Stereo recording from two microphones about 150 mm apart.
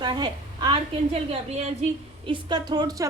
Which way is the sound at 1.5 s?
45° right (ahead or behind).